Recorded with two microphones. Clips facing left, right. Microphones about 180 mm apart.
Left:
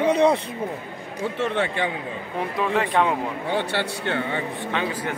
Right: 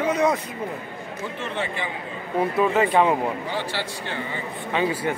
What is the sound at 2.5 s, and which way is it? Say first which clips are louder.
Speech: right 2 dB; 5° right (ahead or behind).